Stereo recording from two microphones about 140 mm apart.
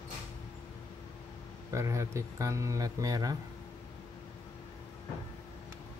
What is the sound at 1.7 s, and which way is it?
Speech, 20° right (ahead or behind).